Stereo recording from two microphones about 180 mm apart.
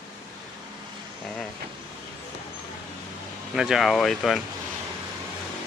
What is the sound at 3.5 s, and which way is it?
Speech, centre (ahead or behind).